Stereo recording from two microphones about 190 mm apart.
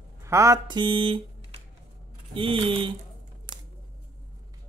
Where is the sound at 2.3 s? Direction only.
30° right (ahead or behind).